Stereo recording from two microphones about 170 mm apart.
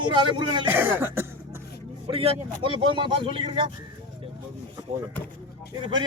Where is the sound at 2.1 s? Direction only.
30° right (ahead or behind).